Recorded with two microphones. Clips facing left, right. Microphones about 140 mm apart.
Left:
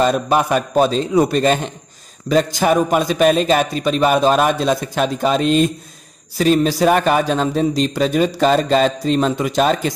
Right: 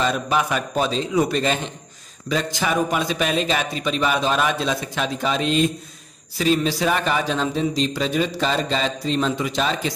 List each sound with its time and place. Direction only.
0.0 s a man's voice: 45° left (ahead or behind)